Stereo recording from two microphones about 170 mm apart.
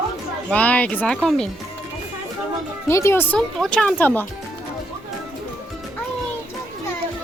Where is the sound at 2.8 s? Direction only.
15° left (ahead or behind).